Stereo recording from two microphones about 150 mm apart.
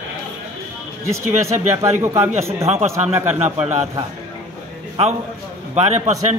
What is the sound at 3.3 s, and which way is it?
Speech, 45° right (ahead or behind).